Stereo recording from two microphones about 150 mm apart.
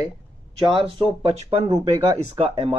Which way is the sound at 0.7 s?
40° right (ahead or behind).